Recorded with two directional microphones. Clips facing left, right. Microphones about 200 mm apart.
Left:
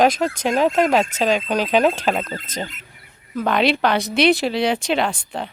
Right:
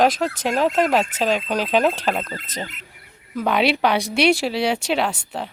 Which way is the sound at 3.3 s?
10° right (ahead or behind).